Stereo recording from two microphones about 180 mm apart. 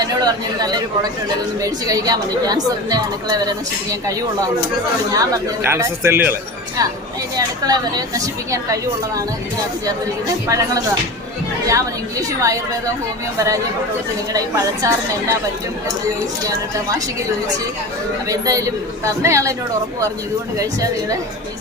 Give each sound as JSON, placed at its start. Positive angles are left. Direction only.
{"t": 0.0, "sound": "a woman's voice", "side_deg": -20}
{"t": 5.1, "sound": "a man's voice", "side_deg": -20}
{"t": 7.3, "sound": "a woman's voice", "side_deg": -20}
{"t": 10.5, "sound": "a man's voice", "side_deg": -15}
{"t": 14.3, "sound": "a man's voice", "side_deg": -20}
{"t": 18.3, "sound": "a man's voice", "side_deg": -20}
{"t": 20.6, "sound": "a woman's voice", "side_deg": -20}